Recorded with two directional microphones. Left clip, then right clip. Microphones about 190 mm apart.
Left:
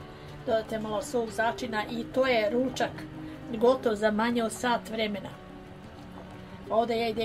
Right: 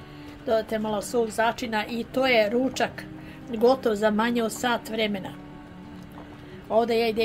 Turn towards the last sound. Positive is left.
turn(degrees=-40)  # may be behind; listen again after turning